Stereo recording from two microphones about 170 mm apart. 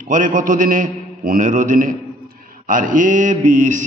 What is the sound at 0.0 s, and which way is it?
A man's voice, 50° right (ahead or behind).